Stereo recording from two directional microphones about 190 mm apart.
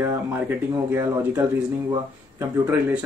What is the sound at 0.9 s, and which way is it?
Speech, 10° right (ahead or behind).